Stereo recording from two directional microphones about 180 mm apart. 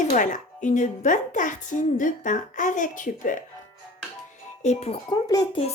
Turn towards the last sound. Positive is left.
turn(degrees=20)  # may be behind; listen again after turning